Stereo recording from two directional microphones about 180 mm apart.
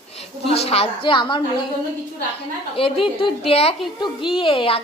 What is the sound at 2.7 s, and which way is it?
A woman's voice, 30° left (ahead or behind).